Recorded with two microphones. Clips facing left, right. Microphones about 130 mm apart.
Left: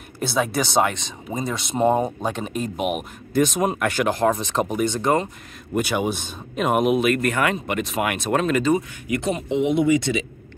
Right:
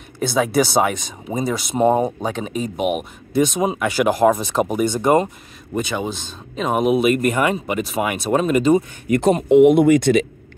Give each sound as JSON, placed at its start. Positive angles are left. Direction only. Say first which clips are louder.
{"t": 0.2, "sound": "speech", "louder": "right 5 dB", "side_deg": 0}
{"t": 5.8, "sound": "speech", "louder": "left 1 dB", "side_deg": 10}
{"t": 7.0, "sound": "speech", "louder": "right 3 dB", "side_deg": -10}
{"t": 9.0, "sound": "speech", "louder": "right 7 dB", "side_deg": -45}